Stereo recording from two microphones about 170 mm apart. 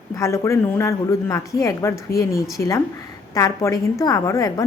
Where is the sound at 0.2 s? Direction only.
15° left (ahead or behind).